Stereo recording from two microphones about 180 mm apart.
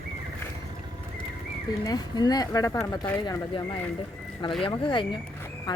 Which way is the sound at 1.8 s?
20° left (ahead or behind).